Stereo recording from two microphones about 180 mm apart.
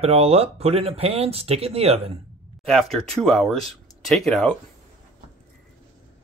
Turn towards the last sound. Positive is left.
turn(degrees=0)  # may be behind; listen again after turning